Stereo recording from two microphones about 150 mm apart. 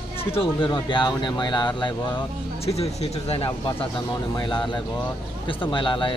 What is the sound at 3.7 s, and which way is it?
Speech, 30° left (ahead or behind).